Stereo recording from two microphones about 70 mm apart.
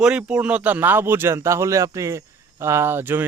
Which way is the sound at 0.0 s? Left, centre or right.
Centre.